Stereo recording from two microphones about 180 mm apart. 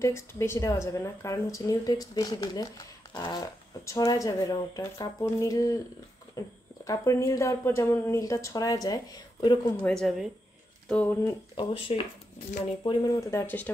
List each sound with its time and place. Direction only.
0.0 s a woman's voice: 15° left (ahead or behind)
9.8 s speech: centre (ahead or behind)
11.5 s a woman's voice: 30° left (ahead or behind); by 13.7 s 15° left (ahead or behind)